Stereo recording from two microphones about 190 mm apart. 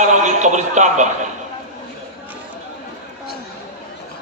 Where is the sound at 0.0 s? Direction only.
40° right (ahead or behind).